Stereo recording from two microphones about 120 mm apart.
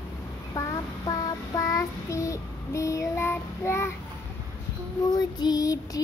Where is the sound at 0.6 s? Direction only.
25° left (ahead or behind).